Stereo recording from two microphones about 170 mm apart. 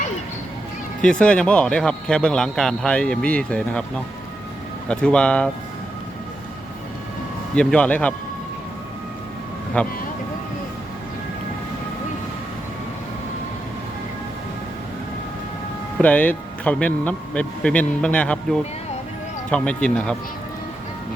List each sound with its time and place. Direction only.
1.0 s speech: 5° left (ahead or behind)
7.5 s speech: 5° left (ahead or behind)
9.8 s speech: 10° left (ahead or behind)
16.0 s speech: 10° left (ahead or behind)